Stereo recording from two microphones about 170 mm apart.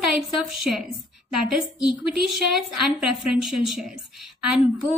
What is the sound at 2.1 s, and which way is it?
A woman's voice, centre (ahead or behind).